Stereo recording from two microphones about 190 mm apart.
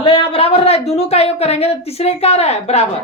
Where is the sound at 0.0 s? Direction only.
25° left (ahead or behind).